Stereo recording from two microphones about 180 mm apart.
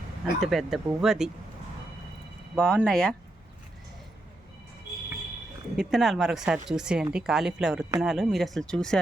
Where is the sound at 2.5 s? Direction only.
5° left (ahead or behind).